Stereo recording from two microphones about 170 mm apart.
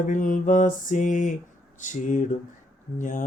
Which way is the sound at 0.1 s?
50° left (ahead or behind).